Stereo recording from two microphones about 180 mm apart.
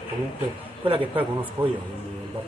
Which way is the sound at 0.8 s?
30° right (ahead or behind).